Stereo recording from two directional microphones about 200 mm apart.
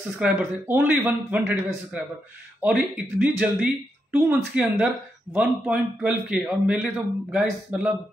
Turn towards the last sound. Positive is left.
turn(degrees=-5)  # may be behind; listen again after turning